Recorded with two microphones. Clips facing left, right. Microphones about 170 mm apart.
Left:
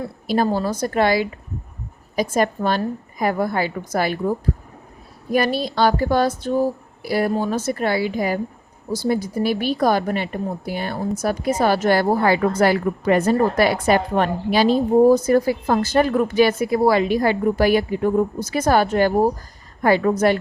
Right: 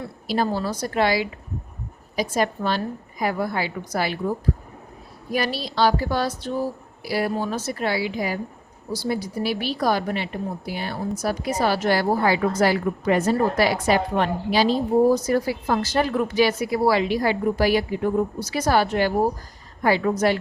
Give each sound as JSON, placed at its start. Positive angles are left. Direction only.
{"t": 0.3, "sound": "a woman's voice", "side_deg": 50}
{"t": 5.3, "sound": "a woman's voice", "side_deg": 50}